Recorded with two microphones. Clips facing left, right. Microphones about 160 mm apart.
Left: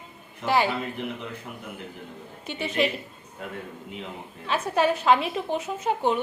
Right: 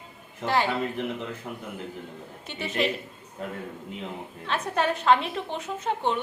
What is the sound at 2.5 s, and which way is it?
Speech, centre (ahead or behind).